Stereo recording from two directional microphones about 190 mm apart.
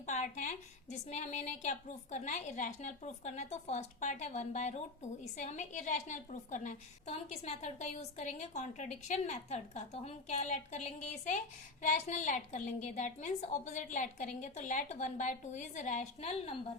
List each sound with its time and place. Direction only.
0.0 s a woman's voice: 40° left (ahead or behind)